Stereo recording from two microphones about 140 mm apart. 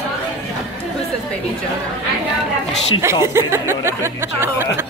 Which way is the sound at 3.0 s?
20° right (ahead or behind).